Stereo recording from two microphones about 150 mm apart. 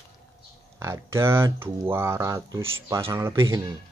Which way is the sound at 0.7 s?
20° right (ahead or behind).